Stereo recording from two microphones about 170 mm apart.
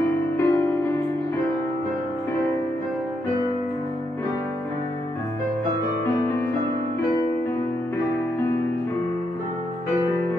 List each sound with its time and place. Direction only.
0.0 s music: 15° left (ahead or behind)
6.1 s music: 15° left (ahead or behind)